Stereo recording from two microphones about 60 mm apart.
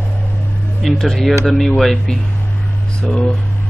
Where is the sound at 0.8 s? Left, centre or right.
Centre.